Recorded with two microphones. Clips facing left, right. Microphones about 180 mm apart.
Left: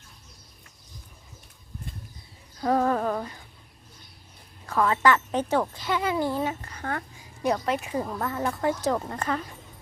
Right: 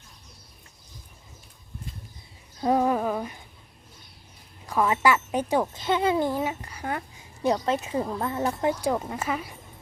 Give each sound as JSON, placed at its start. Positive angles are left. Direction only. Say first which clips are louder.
{"t": 2.6, "sound": "a sound", "louder": "right 1 dB", "side_deg": -15}
{"t": 4.6, "sound": "a woman's voice", "louder": "even", "side_deg": -15}
{"t": 5.8, "sound": "a child's voice", "louder": "right 3 dB", "side_deg": -25}
{"t": 8.7, "sound": "a woman's voice", "louder": "even", "side_deg": -10}